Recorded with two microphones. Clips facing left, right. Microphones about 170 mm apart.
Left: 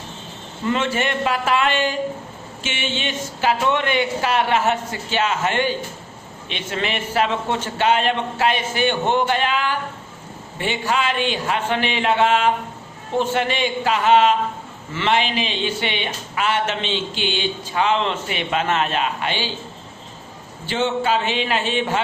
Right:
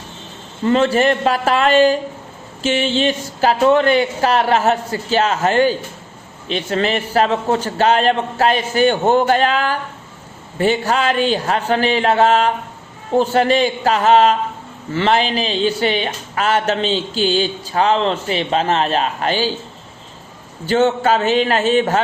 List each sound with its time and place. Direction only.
0.7 s speech: 35° right (ahead or behind)
20.7 s speech: 45° right (ahead or behind)